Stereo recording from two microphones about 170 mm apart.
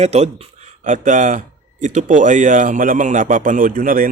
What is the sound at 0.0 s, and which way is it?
A man's voice, 40° right (ahead or behind).